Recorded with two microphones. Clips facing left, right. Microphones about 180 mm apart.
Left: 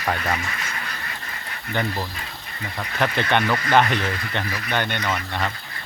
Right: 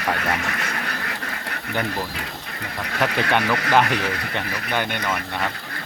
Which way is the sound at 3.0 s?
5° right (ahead or behind).